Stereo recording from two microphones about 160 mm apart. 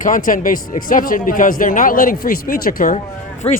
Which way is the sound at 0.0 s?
55° left (ahead or behind).